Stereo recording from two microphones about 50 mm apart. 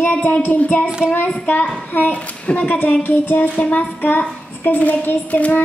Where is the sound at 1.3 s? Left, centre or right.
Left.